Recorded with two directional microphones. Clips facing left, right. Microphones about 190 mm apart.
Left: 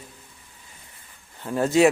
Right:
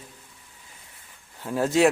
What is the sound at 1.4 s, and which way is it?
Speech, centre (ahead or behind).